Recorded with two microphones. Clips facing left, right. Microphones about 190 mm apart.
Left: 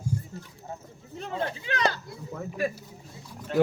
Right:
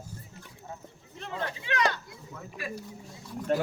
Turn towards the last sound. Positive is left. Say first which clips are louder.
# left 6 dB
turn(degrees=-50)  # may be behind; listen again after turning